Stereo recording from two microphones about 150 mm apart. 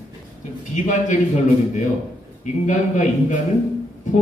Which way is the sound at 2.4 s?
55° left (ahead or behind).